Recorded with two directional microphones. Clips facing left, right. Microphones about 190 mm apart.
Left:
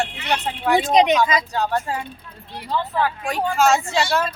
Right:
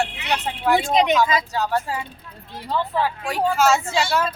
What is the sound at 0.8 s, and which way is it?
Speech, 20° left (ahead or behind).